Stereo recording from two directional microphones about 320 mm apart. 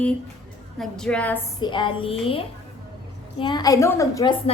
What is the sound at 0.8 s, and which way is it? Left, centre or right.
A woman's voice, centre.